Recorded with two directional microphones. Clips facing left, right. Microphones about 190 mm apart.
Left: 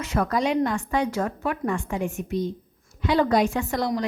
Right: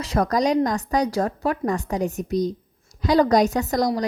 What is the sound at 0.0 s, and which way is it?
Speech, 35° right (ahead or behind).